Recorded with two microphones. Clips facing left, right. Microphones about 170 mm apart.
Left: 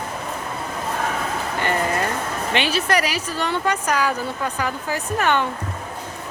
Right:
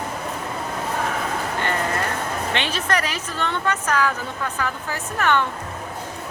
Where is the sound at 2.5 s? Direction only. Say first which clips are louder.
Left 5 dB; 10° left (ahead or behind).